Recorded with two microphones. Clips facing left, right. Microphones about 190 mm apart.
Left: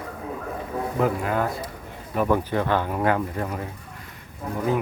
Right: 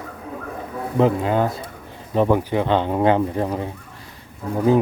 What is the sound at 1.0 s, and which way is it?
Speech, 25° right (ahead or behind).